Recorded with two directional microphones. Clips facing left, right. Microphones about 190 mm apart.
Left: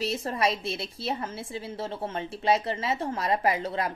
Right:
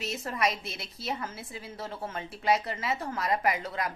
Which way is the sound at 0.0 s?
30° left (ahead or behind).